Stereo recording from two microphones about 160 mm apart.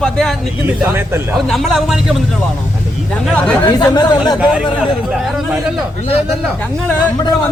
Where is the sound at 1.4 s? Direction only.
Centre (ahead or behind).